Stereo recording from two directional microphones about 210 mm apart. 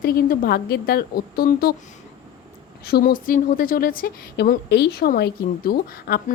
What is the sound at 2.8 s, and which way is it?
A woman's voice, 50° left (ahead or behind).